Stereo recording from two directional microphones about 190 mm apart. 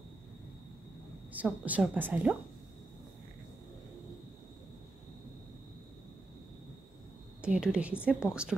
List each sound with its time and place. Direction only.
1.3 s a woman's voice: 10° right (ahead or behind)
7.4 s a woman's voice: 5° right (ahead or behind)